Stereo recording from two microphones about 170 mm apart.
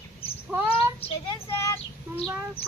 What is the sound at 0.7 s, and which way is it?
Child singing, 35° left (ahead or behind).